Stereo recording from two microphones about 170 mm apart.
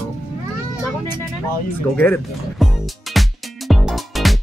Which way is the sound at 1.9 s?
5° left (ahead or behind).